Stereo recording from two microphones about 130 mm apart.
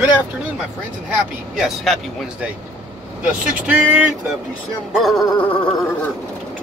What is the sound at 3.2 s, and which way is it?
Speech, 10° right (ahead or behind).